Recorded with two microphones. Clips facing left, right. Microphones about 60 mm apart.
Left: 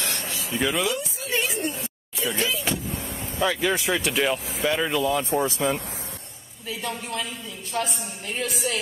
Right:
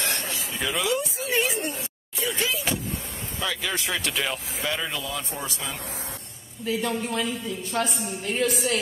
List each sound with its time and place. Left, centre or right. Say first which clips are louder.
0.6 s speech: left 1 dB; centre
3.3 s speech: left 6 dB; left
4.0 s speech: left 5 dB; centre
4.9 s speech: left 9 dB; left
6.6 s a woman's voice: right 5 dB; centre